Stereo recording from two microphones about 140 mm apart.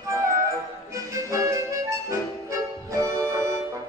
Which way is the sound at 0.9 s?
20° right (ahead or behind).